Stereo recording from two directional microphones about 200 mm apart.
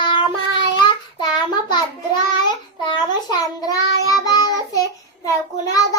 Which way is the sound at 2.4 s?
20° left (ahead or behind).